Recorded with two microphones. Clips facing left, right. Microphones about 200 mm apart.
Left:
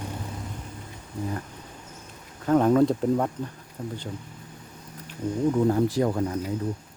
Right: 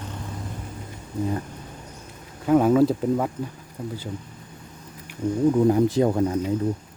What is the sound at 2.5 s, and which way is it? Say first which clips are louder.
Speech: right 2 dB; 5° right (ahead or behind).